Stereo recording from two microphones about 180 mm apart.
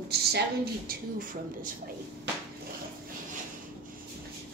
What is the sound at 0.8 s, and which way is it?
Speech, 50° right (ahead or behind).